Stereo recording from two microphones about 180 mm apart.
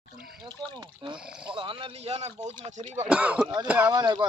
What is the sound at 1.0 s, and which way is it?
Speech, 30° right (ahead or behind).